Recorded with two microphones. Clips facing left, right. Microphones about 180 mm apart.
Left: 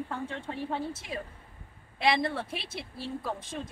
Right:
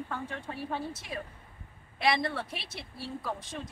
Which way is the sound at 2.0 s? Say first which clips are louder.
Left 1 dB; 20° left (ahead or behind).